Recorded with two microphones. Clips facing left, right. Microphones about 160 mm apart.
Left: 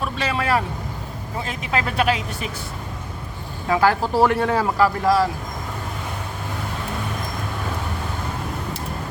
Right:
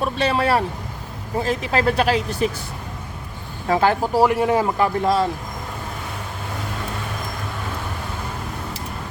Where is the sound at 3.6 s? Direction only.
25° right (ahead or behind).